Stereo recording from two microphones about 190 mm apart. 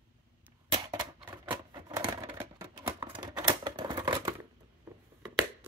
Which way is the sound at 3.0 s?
25° right (ahead or behind).